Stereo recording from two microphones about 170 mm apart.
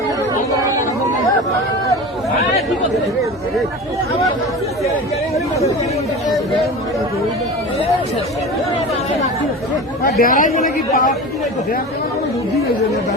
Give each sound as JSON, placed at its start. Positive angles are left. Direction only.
{"t": 10.0, "sound": "speech", "side_deg": 60}